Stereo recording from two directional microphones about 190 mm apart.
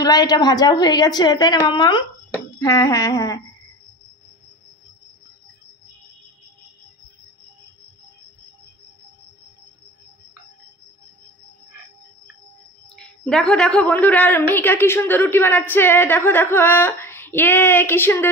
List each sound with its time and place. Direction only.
0.0 s a woman's voice: 20° left (ahead or behind)
12.9 s a woman's voice: 5° left (ahead or behind)